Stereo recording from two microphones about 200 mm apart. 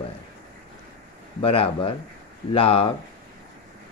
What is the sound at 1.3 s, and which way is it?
Speech, 30° left (ahead or behind).